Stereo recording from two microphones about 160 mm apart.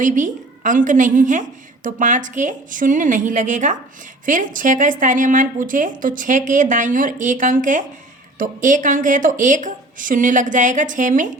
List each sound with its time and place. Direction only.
0.0 s a woman's voice: 55° right (ahead or behind)